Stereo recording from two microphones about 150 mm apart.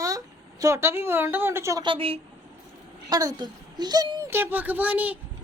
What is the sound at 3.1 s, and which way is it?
A woman's voice, 25° right (ahead or behind).